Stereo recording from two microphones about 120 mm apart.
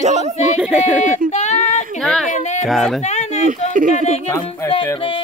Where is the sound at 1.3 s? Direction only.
75° left (ahead or behind).